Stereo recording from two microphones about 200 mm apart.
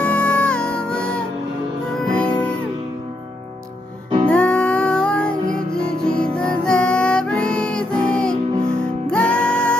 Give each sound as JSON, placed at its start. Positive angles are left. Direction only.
{"t": 0.0, "sound": "music", "side_deg": 5}
{"t": 4.3, "sound": "music", "side_deg": 5}